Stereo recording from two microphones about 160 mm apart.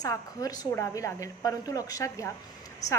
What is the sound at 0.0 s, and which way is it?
A woman's voice, 20° left (ahead or behind).